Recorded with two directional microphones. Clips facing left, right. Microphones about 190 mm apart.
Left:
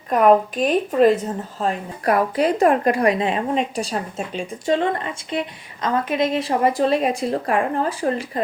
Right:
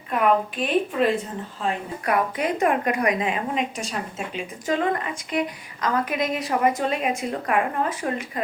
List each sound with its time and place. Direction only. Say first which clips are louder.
0.1 s a woman's voice: left 6 dB; 40° left (ahead or behind)